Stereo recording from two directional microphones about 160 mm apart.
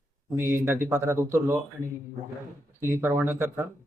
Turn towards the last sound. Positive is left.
turn(degrees=-15)  # may be behind; listen again after turning